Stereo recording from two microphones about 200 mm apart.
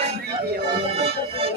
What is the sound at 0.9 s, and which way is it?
Music, 30° right (ahead or behind).